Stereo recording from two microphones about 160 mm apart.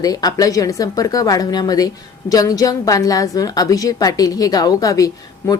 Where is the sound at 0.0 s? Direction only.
25° left (ahead or behind).